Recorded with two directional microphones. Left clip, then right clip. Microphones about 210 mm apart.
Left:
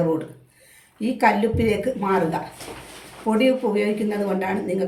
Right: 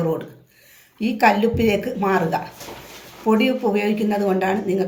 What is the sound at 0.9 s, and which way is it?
Speech, 40° right (ahead or behind).